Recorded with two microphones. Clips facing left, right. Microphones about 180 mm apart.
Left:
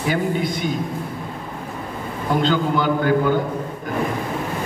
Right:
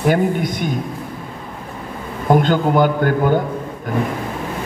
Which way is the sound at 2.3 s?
50° right (ahead or behind).